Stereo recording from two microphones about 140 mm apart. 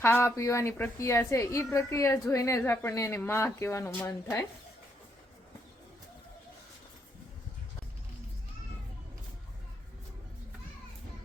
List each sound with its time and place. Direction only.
0.0 s a woman's voice: 15° left (ahead or behind)